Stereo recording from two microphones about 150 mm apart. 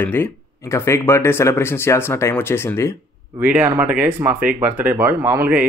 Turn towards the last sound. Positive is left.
turn(degrees=-15)  # may be behind; listen again after turning